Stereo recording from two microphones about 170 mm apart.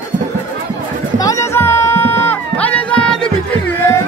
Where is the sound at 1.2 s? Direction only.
20° left (ahead or behind).